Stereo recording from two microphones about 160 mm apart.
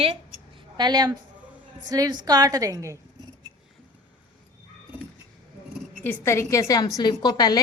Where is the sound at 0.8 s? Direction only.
25° right (ahead or behind).